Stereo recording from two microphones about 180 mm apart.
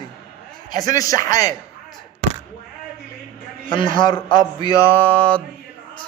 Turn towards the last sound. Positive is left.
turn(degrees=5)  # may be behind; listen again after turning